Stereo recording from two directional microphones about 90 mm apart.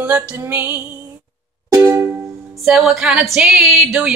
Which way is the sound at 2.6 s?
5° right (ahead or behind).